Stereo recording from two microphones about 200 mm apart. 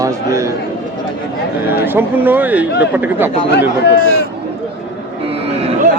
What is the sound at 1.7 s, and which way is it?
Speech, 10° right (ahead or behind).